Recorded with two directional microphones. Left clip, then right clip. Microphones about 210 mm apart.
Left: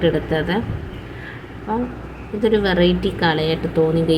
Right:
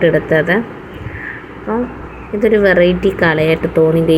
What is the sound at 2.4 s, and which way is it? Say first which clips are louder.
A woman's voice: right 7 dB; 5° right (ahead or behind).